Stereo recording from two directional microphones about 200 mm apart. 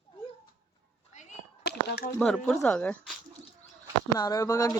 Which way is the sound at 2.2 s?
5° left (ahead or behind).